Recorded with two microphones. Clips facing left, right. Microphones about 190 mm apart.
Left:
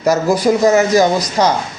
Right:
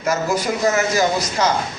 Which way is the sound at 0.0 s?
35° left (ahead or behind).